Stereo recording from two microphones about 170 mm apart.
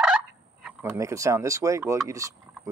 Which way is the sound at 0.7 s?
15° right (ahead or behind).